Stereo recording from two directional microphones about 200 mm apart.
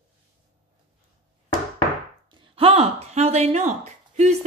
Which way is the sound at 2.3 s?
30° right (ahead or behind).